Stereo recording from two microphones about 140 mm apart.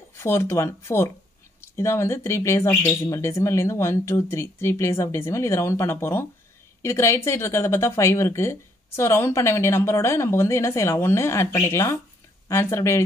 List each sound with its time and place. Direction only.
0.2 s speech: 20° left (ahead or behind)
2.7 s speech: 5° left (ahead or behind)
3.0 s speech: 20° left (ahead or behind)